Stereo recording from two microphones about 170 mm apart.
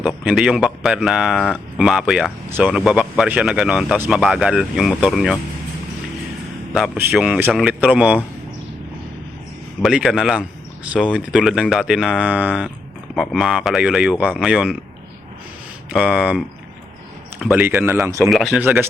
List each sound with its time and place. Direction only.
0.3 s speech: 5° right (ahead or behind)
6.7 s speech: centre (ahead or behind)
9.8 s speech: centre (ahead or behind)
15.9 s speech: centre (ahead or behind)
17.4 s speech: 5° right (ahead or behind)
18.3 s speech: centre (ahead or behind)
18.6 s speech: 15° right (ahead or behind)